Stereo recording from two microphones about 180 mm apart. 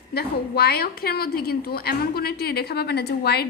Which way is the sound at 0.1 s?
60° left (ahead or behind).